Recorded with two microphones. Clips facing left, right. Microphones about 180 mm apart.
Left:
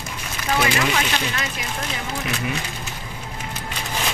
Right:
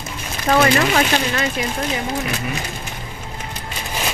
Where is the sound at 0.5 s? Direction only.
45° right (ahead or behind).